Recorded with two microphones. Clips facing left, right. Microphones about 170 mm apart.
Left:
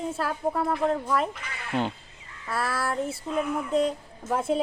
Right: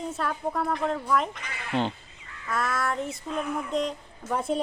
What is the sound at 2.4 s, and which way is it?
Child singing, 30° left (ahead or behind).